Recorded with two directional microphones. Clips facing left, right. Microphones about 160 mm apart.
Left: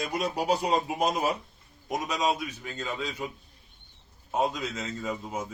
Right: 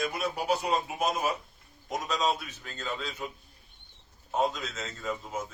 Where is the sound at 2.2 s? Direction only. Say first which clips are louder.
Left 2 dB; 5° left (ahead or behind).